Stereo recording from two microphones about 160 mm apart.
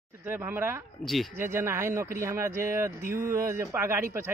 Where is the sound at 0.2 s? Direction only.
15° right (ahead or behind).